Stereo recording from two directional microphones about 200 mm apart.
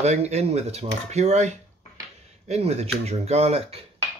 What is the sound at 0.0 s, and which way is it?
Speech, 35° right (ahead or behind).